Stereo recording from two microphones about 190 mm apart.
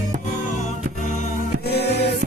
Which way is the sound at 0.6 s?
40° left (ahead or behind).